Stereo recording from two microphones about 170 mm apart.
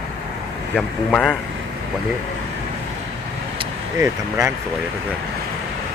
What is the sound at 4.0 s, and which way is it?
Speech, 15° right (ahead or behind).